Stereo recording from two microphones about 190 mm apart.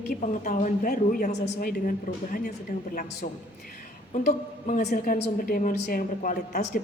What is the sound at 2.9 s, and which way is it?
Speech, 50° left (ahead or behind).